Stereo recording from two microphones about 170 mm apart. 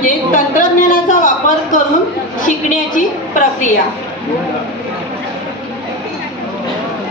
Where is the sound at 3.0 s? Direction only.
50° left (ahead or behind).